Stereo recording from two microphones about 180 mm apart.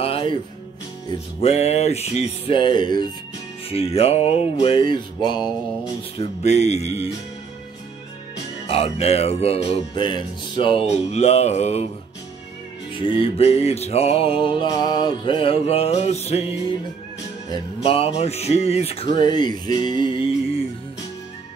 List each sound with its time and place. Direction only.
0.0 s music: 30° left (ahead or behind)
1.4 s music: 35° left (ahead or behind)
6.1 s music: 40° left (ahead or behind)
8.6 s music: 35° left (ahead or behind)
13.0 s music: 30° left (ahead or behind)
17.8 s music: 30° left (ahead or behind)